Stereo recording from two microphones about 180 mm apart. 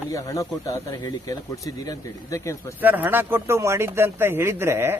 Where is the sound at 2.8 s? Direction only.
10° right (ahead or behind).